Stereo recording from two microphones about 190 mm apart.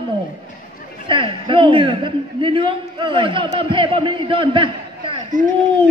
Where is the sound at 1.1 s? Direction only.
25° right (ahead or behind).